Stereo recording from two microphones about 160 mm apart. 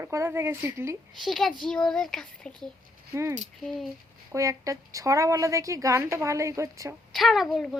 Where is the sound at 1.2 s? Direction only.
Centre (ahead or behind).